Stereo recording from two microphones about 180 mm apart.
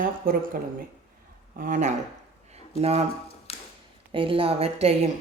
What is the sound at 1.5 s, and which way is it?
Speech, 45° right (ahead or behind).